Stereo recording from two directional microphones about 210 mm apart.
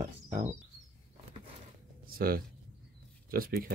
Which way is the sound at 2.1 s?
45° right (ahead or behind).